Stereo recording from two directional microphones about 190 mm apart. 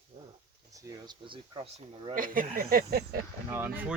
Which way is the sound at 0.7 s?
20° right (ahead or behind).